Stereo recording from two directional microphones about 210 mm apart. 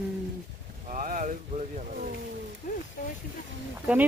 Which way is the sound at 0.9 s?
40° right (ahead or behind).